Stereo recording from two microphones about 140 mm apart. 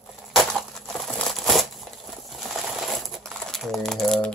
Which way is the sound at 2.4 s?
Centre (ahead or behind).